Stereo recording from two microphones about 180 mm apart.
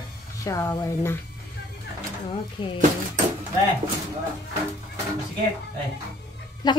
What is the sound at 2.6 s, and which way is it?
Speech, 25° left (ahead or behind).